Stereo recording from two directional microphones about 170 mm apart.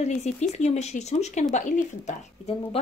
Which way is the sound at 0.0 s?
40° left (ahead or behind).